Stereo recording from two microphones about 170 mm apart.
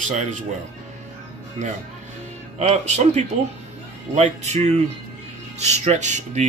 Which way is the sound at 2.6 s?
40° right (ahead or behind).